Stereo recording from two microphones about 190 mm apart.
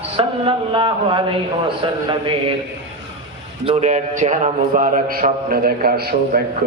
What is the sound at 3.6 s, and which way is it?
A man's voice, 40° right (ahead or behind).